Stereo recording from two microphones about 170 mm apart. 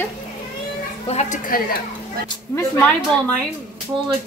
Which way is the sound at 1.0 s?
40° left (ahead or behind).